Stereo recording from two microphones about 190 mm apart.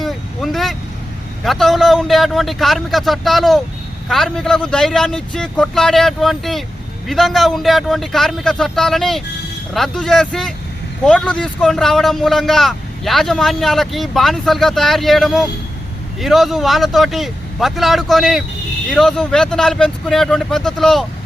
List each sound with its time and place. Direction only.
0.0 s vehicle: centre (ahead or behind)
1.5 s a man's voice: centre (ahead or behind)